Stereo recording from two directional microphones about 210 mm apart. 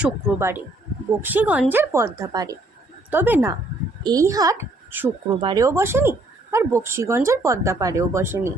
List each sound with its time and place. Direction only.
0.0 s speech: 10° right (ahead or behind)
5.4 s speech: 20° right (ahead or behind)